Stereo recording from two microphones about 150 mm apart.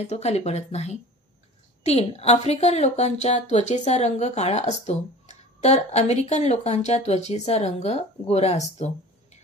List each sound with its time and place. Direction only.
0.0 s a woman's voice: 45° left (ahead or behind)